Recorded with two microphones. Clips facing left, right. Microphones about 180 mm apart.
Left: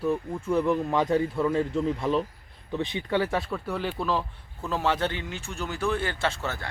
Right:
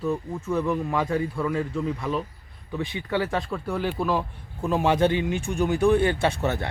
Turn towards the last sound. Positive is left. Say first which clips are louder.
# right 5 dB
turn(degrees=-20)  # may be behind; listen again after turning